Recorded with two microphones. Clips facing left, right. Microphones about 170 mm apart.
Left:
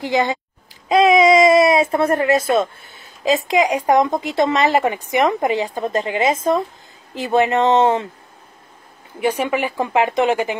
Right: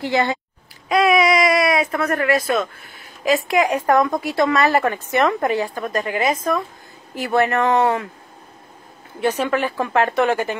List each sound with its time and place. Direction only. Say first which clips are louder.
0.0 s speech: left 1 dB; 15° left (ahead or behind)
9.2 s speech: even; 15° left (ahead or behind)